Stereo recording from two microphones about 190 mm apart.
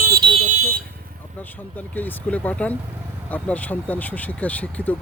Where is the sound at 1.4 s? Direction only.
10° left (ahead or behind).